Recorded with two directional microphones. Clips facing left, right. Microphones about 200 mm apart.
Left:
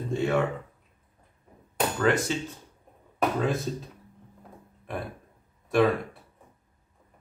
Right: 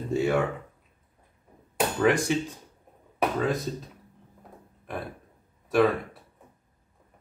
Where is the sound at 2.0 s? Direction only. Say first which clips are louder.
Right 2 dB; 10° right (ahead or behind).